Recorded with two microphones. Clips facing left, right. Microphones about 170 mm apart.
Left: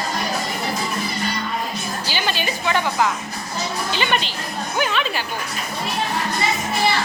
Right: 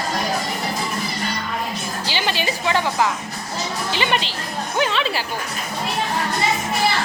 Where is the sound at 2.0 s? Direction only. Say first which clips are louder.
Right 2 dB; 25° right (ahead or behind).